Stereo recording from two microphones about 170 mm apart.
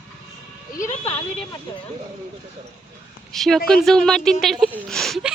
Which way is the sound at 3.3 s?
Centre (ahead or behind).